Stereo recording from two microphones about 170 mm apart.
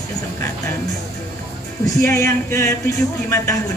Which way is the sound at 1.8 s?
15° left (ahead or behind).